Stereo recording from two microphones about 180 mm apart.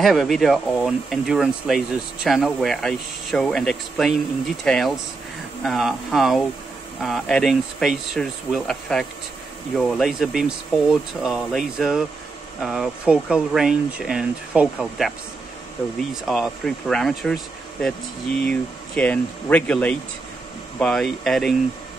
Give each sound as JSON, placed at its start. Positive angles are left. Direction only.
{"t": 0.0, "sound": "speech", "side_deg": 0}
{"t": 16.3, "sound": "speech", "side_deg": 0}
{"t": 18.4, "sound": "speech", "side_deg": 5}